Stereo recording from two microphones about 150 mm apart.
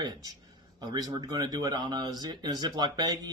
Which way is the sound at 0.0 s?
25° right (ahead or behind).